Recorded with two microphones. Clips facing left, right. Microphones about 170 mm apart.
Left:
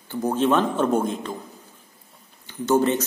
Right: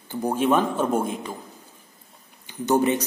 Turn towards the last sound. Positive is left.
turn(degrees=-15)  # may be behind; listen again after turning